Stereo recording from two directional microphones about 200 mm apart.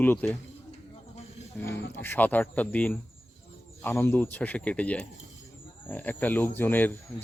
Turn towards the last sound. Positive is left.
turn(degrees=10)  # may be behind; listen again after turning